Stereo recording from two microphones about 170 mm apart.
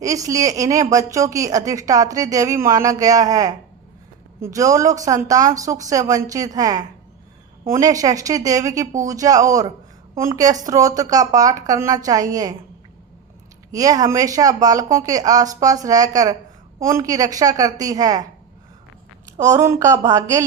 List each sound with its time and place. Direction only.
0.0 s a woman's voice: 20° right (ahead or behind)
13.7 s a woman's voice: 20° right (ahead or behind)
19.4 s a woman's voice: 20° right (ahead or behind)